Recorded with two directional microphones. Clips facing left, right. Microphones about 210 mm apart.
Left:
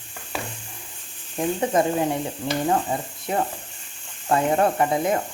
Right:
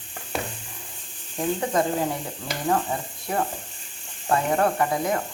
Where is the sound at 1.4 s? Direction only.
20° left (ahead or behind).